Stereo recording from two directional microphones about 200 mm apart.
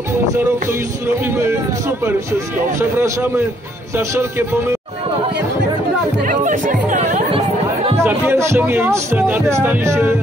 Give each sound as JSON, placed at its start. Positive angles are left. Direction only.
{"t": 0.7, "sound": "speech", "side_deg": -10}
{"t": 6.2, "sound": "chatter", "side_deg": -40}
{"t": 8.0, "sound": "speech", "side_deg": -10}